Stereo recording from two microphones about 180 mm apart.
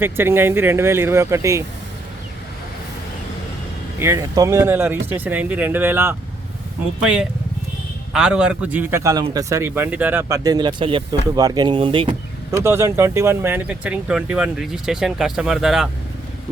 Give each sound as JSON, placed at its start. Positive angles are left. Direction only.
{"t": 0.0, "sound": "a man's voice", "side_deg": -10}
{"t": 4.0, "sound": "a man's voice", "side_deg": -15}
{"t": 12.5, "sound": "a man's voice", "side_deg": -15}